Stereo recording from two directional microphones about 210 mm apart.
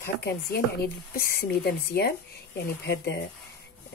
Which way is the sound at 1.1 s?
45° left (ahead or behind).